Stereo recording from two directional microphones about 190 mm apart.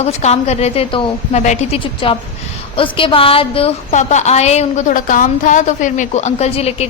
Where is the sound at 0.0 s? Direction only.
35° left (ahead or behind).